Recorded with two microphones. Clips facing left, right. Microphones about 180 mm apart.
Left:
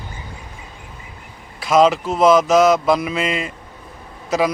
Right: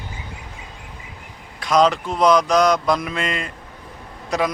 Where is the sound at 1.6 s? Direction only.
5° left (ahead or behind).